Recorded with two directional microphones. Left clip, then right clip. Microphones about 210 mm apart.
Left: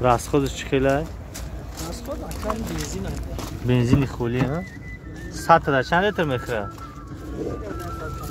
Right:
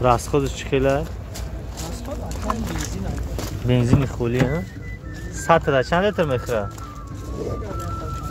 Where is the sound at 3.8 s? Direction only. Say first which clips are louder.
Right 1 dB; 10° left (ahead or behind).